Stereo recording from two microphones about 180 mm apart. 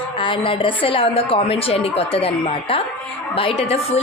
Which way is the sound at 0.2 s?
30° left (ahead or behind).